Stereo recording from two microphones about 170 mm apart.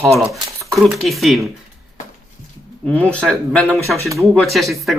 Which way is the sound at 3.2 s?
5° left (ahead or behind).